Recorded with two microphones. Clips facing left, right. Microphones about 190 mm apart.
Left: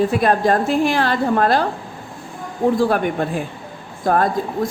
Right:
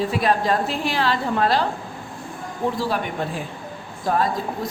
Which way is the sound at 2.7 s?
50° left (ahead or behind).